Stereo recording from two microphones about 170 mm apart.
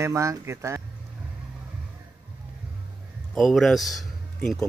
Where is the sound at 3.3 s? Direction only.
Centre (ahead or behind).